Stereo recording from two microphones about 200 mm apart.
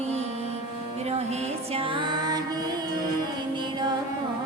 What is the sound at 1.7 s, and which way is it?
Music, 25° right (ahead or behind).